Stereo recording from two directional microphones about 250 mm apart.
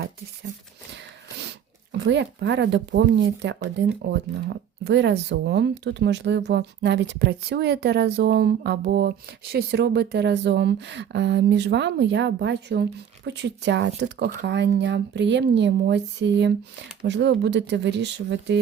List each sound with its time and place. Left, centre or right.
1.4 s speech: right